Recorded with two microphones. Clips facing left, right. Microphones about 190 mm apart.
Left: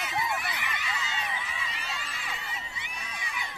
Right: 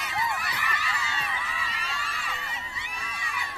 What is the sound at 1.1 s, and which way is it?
Crowd, 20° left (ahead or behind).